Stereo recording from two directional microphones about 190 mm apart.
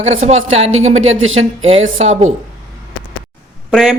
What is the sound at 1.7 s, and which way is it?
Speech, 35° right (ahead or behind).